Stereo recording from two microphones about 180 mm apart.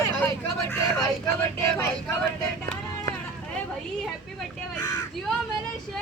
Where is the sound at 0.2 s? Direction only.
5° left (ahead or behind).